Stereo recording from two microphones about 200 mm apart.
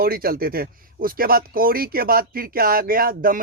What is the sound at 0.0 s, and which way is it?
Speech, 45° right (ahead or behind).